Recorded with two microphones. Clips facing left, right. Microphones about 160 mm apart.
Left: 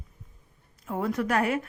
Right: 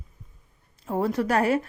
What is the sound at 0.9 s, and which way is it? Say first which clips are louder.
Speech: right 3 dB; 30° right (ahead or behind).